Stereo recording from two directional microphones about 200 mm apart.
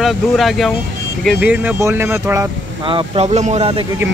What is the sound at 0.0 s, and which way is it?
Speech, centre (ahead or behind).